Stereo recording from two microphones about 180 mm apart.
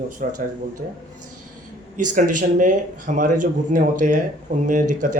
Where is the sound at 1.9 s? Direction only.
45° right (ahead or behind).